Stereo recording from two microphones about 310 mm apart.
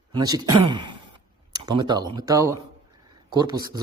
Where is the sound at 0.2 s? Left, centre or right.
Centre.